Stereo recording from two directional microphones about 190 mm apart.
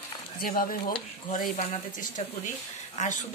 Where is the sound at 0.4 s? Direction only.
45° left (ahead or behind).